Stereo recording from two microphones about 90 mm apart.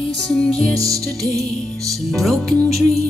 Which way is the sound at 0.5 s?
40° right (ahead or behind).